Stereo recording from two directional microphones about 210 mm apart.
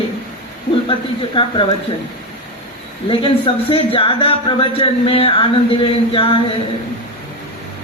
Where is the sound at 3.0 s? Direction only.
25° left (ahead or behind).